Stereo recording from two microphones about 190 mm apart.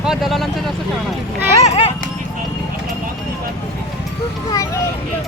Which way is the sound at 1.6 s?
35° left (ahead or behind).